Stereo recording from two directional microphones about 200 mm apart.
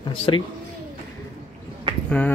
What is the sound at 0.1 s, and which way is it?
Speech, 25° left (ahead or behind).